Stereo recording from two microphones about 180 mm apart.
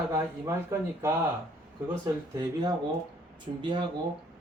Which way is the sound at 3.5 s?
35° right (ahead or behind).